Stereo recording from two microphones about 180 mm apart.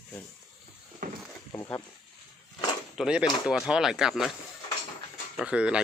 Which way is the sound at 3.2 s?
25° left (ahead or behind).